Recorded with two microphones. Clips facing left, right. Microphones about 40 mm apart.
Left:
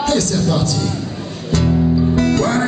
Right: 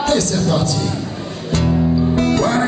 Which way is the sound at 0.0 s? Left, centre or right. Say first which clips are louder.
Even; right.